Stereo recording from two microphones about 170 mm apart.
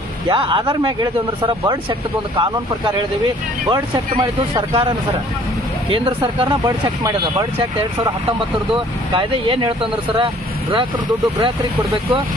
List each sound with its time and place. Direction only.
0.3 s speech: 30° right (ahead or behind)
3.7 s speech: 25° right (ahead or behind)
8.7 s speech: 30° right (ahead or behind)